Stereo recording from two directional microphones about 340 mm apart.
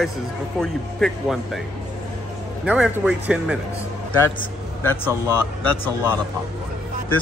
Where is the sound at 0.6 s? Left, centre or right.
Centre.